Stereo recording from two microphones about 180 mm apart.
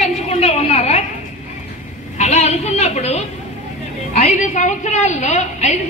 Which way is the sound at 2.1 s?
40° left (ahead or behind).